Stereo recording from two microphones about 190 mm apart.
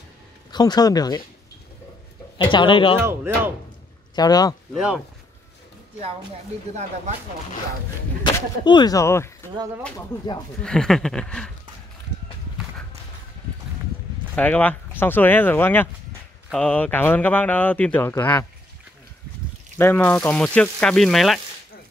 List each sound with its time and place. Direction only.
0.5 s speech: 20° left (ahead or behind)
2.3 s speech: 25° left (ahead or behind)
3.0 s speech: 15° right (ahead or behind)
4.1 s speech: 20° left (ahead or behind)
4.7 s speech: centre (ahead or behind)
8.4 s speech: 20° left (ahead or behind)
10.6 s speech: 5° left (ahead or behind)
14.3 s speech: 10° left (ahead or behind)
19.8 s speech: 10° left (ahead or behind)